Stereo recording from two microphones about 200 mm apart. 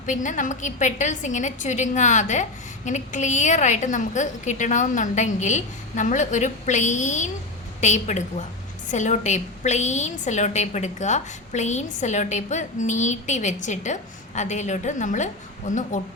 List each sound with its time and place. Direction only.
0.0 s a woman's voice: 40° left (ahead or behind)